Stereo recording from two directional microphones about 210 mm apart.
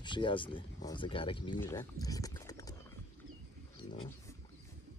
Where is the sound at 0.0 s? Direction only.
20° left (ahead or behind).